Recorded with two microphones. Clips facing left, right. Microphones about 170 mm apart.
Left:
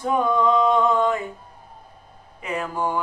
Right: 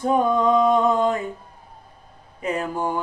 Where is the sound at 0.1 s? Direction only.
40° right (ahead or behind).